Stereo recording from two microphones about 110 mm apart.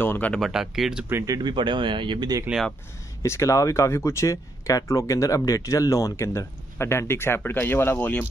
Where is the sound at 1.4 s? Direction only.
45° right (ahead or behind).